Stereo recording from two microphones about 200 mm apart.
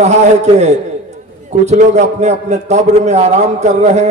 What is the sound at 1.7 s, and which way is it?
A man's voice, 35° right (ahead or behind).